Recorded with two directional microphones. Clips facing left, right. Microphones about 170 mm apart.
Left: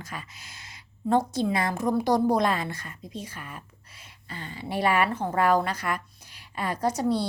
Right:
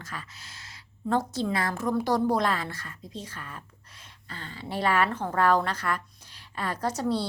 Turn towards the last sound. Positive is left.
turn(degrees=10)  # may be behind; listen again after turning